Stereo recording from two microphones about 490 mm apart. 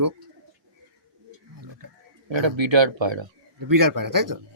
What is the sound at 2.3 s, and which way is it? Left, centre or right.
Speech, right.